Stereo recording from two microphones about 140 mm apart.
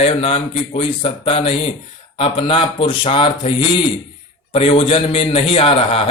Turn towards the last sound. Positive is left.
turn(degrees=40)  # may be behind; listen again after turning